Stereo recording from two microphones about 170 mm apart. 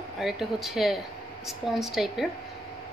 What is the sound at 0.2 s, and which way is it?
A woman's voice, centre (ahead or behind).